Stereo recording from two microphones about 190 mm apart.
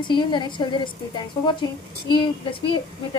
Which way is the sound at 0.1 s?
25° left (ahead or behind).